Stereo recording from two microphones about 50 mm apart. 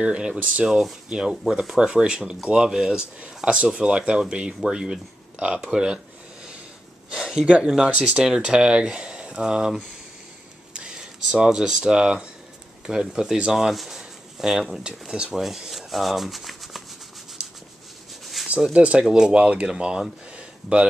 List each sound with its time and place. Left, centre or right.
0.0 s speech: centre
0.7 s speech: centre
7.1 s speech: centre
18.4 s a sound: centre
18.7 s speech: right
19.0 s speech: centre
19.3 s speech: right